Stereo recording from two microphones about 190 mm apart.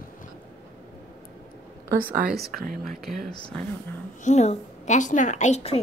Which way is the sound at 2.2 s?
Centre (ahead or behind).